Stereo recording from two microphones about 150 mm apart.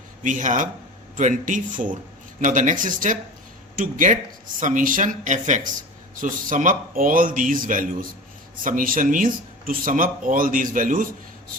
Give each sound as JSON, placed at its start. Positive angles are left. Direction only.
{"t": 0.2, "sound": "speech", "side_deg": -60}